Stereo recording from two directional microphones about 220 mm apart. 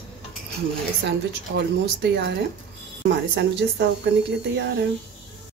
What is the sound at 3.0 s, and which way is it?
Speech, 50° right (ahead or behind).